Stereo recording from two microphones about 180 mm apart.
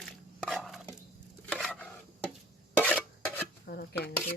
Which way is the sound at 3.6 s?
60° left (ahead or behind).